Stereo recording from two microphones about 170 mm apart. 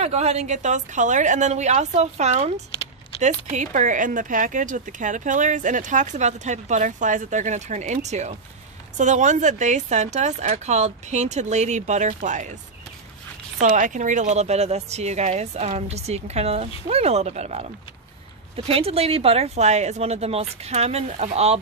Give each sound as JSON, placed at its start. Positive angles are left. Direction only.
{"t": 0.0, "sound": "speech", "side_deg": -40}
{"t": 13.6, "sound": "speech", "side_deg": -45}
{"t": 18.7, "sound": "speech", "side_deg": -35}